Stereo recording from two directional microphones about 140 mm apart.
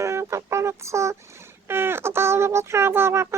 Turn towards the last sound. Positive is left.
turn(degrees=-20)  # may be behind; listen again after turning